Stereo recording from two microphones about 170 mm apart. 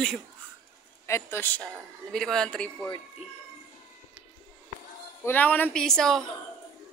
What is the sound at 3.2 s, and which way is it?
Speech, 35° left (ahead or behind).